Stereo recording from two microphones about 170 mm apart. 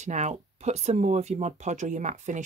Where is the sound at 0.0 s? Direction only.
45° right (ahead or behind).